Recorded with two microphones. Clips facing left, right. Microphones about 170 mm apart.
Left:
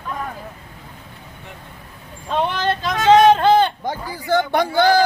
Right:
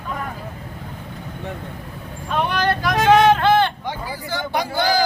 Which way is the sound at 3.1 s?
20° left (ahead or behind).